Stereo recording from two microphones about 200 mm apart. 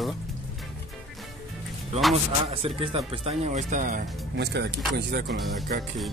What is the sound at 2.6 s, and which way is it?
Speech, 25° right (ahead or behind).